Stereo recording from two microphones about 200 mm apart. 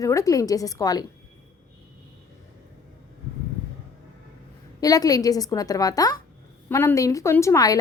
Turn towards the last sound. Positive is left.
turn(degrees=15)  # may be behind; listen again after turning